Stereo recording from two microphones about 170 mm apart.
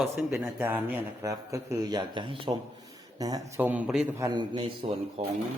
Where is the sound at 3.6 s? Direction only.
10° right (ahead or behind); by 5.2 s 30° right (ahead or behind).